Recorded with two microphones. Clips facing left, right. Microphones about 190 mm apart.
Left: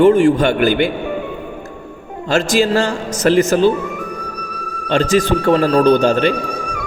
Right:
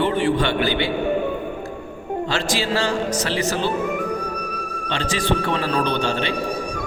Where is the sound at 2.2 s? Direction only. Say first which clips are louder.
Left 10 dB; 45° left (ahead or behind).